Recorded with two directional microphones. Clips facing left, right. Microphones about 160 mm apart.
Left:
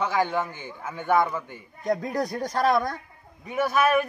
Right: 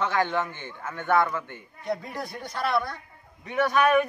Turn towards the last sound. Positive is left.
turn(degrees=5)  # may be behind; listen again after turning